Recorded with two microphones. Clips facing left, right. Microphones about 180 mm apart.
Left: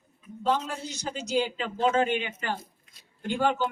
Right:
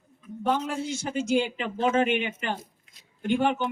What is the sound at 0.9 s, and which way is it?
Speech, 25° right (ahead or behind).